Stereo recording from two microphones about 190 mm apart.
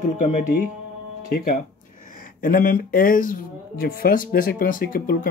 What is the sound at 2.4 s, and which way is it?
Speech, 45° left (ahead or behind).